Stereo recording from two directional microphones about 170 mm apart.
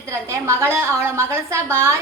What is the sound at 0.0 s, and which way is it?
A woman's voice, 15° right (ahead or behind).